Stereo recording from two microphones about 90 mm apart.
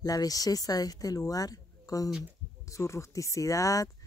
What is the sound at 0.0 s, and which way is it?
Speech, 45° left (ahead or behind).